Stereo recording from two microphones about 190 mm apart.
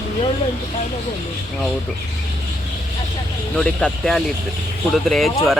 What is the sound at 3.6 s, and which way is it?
Speech, 5° left (ahead or behind).